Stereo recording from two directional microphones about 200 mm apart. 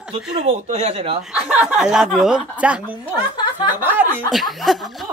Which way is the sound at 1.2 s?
5° right (ahead or behind).